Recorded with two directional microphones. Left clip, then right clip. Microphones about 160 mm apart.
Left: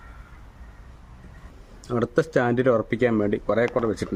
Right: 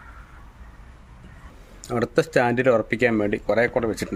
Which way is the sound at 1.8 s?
20° left (ahead or behind).